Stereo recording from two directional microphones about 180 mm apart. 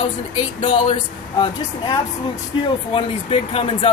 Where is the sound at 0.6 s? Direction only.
30° left (ahead or behind).